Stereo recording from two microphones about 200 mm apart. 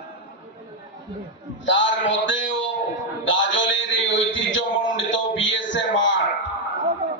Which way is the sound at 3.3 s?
70° left (ahead or behind).